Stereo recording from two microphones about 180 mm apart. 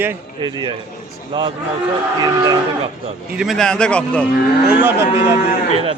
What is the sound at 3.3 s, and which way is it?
Speech, centre (ahead or behind).